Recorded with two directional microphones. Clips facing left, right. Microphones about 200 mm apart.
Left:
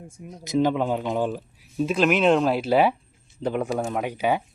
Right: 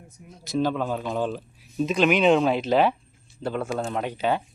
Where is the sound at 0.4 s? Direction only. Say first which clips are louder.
Left 3 dB; 15° left (ahead or behind).